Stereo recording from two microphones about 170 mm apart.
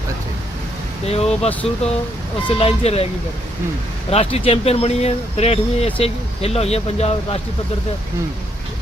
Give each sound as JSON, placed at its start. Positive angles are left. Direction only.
{"t": 1.0, "sound": "speech", "side_deg": 40}
{"t": 4.1, "sound": "speech", "side_deg": 35}